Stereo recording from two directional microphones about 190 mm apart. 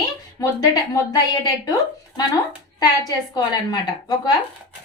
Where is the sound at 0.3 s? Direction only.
20° left (ahead or behind).